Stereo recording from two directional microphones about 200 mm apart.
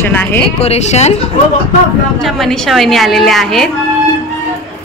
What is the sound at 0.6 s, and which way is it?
Speech, 35° left (ahead or behind).